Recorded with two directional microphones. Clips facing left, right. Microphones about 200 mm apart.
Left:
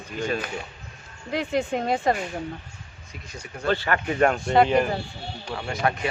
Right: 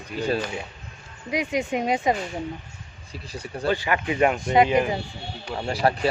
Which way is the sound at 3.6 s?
15° right (ahead or behind).